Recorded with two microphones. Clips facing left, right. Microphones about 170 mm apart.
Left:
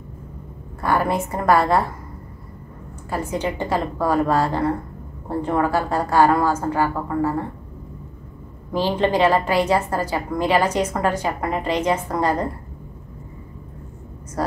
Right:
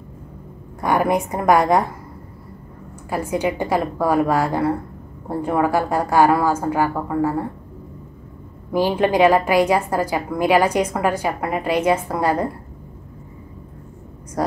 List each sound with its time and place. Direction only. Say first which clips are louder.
0.7 s a woman's voice: right 2 dB; 15° right (ahead or behind)
3.1 s a woman's voice: right 3 dB; 10° right (ahead or behind)
8.7 s a woman's voice: right 2 dB; 10° right (ahead or behind)